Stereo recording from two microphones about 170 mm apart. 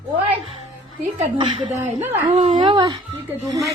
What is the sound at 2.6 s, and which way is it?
Speech, 25° right (ahead or behind).